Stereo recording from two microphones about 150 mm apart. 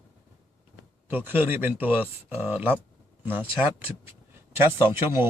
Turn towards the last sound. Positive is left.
turn(degrees=-15)  # may be behind; listen again after turning